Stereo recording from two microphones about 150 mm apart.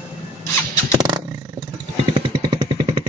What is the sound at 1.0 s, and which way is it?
Roaring cats, 30° right (ahead or behind).